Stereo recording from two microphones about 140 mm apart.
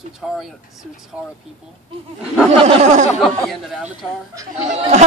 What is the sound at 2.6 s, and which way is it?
Speech, 55° right (ahead or behind).